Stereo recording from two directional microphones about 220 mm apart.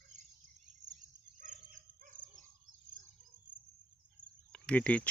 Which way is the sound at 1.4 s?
35° right (ahead or behind).